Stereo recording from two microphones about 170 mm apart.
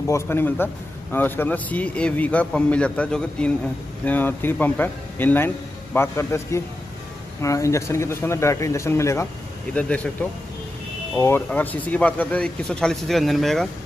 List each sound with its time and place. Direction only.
0.0 s a man's voice: 15° left (ahead or behind)
11.1 s speech: 15° left (ahead or behind)